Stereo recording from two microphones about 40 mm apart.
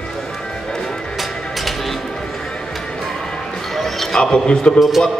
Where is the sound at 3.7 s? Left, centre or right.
Centre.